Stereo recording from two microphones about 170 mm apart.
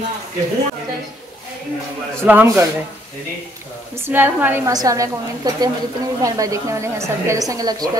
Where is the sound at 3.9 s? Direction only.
15° right (ahead or behind).